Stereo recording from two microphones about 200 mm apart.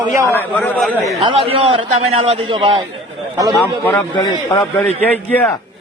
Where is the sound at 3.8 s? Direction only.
10° left (ahead or behind).